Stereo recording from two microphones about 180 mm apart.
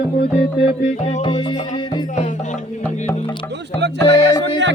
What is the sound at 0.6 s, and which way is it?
Music, 40° left (ahead or behind).